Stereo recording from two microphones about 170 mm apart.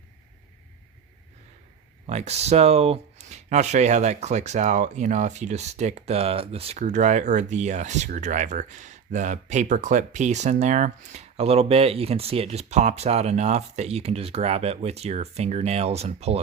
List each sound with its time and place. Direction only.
2.0 s speech: 40° right (ahead or behind)